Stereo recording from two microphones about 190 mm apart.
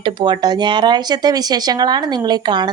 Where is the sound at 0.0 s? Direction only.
25° right (ahead or behind).